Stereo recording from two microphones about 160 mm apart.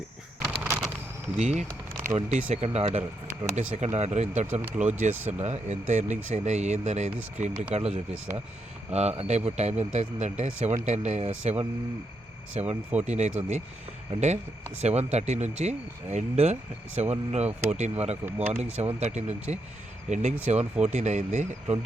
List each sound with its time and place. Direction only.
0.5 s a sound: 5° right (ahead or behind)
1.4 s speech: 45° right (ahead or behind)
4.6 s speech: 10° right (ahead or behind)
5.4 s speech: 45° right (ahead or behind)
12.6 s speech: 45° right (ahead or behind)